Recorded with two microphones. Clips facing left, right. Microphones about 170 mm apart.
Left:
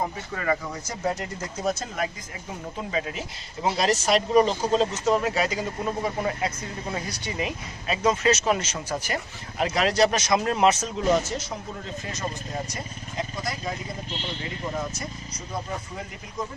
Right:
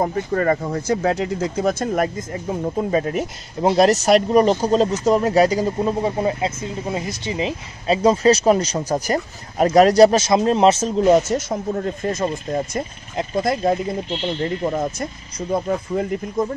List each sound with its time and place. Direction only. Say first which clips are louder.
0.0 s speech: right 10 dB; 50° right (ahead or behind); by 11.1 s 30° right (ahead or behind)
11.3 s speech: right 11 dB; 45° right (ahead or behind)